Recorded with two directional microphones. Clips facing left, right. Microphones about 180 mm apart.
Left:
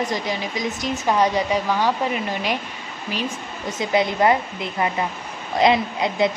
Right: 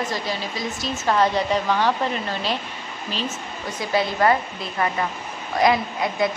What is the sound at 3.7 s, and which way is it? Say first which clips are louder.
Speech: left 3 dB; 20° left (ahead or behind).